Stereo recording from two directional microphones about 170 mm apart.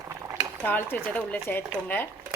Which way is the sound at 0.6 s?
10° left (ahead or behind).